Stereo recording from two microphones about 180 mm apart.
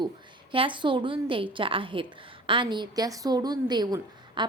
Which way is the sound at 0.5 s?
30° right (ahead or behind).